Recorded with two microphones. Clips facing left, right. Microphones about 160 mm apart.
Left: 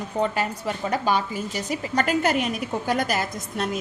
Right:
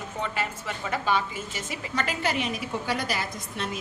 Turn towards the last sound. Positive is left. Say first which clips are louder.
# left 5 dB
turn(degrees=45)  # may be behind; listen again after turning